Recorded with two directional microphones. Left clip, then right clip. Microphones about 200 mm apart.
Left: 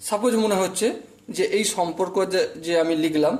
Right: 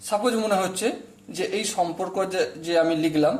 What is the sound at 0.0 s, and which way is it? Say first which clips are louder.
A man's voice: left 2 dB; 20° left (ahead or behind).